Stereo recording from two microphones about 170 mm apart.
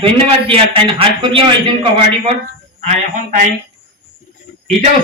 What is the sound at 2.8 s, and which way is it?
Speech, 45° right (ahead or behind).